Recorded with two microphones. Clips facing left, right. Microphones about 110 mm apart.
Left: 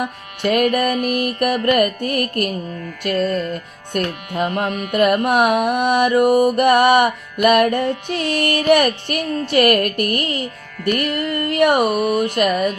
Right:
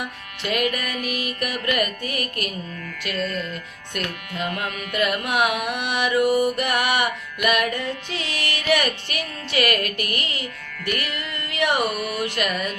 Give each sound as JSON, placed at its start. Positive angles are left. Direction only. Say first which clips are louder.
{"t": 0.0, "sound": "music", "louder": "left 9 dB", "side_deg": 45}